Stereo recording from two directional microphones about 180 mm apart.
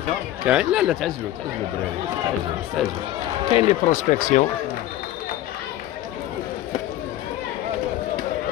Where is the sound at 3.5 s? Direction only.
35° left (ahead or behind).